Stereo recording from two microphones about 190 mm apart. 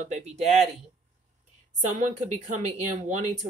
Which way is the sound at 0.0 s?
35° right (ahead or behind).